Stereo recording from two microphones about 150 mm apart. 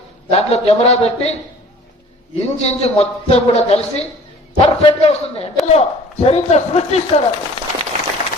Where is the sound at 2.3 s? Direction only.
45° left (ahead or behind).